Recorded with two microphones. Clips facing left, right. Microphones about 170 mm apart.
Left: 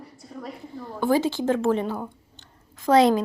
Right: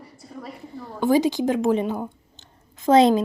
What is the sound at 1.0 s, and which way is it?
Speech, 15° right (ahead or behind).